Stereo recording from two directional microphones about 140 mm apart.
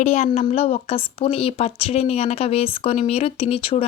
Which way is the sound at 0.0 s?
55° left (ahead or behind).